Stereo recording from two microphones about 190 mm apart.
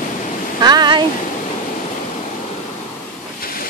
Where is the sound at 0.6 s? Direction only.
20° right (ahead or behind).